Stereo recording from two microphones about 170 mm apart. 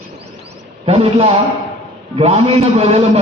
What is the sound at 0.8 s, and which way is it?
A man's voice, 35° right (ahead or behind).